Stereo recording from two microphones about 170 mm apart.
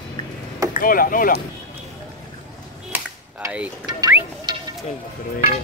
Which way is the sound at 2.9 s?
10° right (ahead or behind).